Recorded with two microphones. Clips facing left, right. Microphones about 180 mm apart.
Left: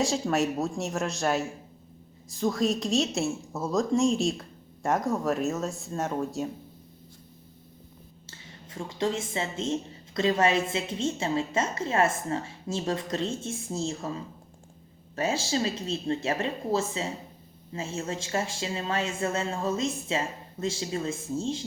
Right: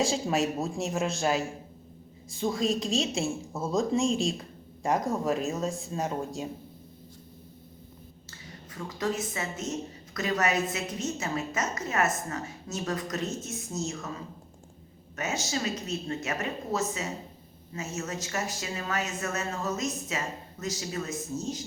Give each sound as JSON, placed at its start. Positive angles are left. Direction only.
{"t": 0.0, "sound": "a woman's voice", "side_deg": 0}
{"t": 8.3, "sound": "a woman's voice", "side_deg": 25}
{"t": 15.1, "sound": "a woman's voice", "side_deg": 30}